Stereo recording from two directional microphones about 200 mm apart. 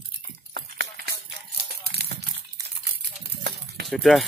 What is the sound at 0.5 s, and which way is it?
Clip-clop, 55° right (ahead or behind).